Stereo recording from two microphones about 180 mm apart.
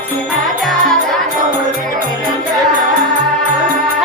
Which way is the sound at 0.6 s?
Centre (ahead or behind).